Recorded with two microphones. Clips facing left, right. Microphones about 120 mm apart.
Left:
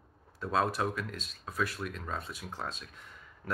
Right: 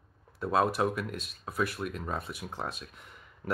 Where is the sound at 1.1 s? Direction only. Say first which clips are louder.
Right 3 dB; 60° right (ahead or behind).